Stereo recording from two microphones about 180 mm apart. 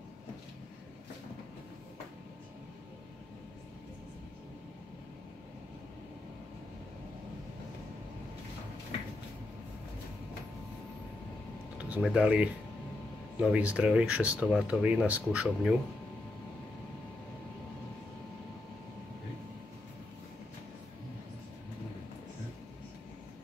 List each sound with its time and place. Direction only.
11.8 s speech: 5° right (ahead or behind)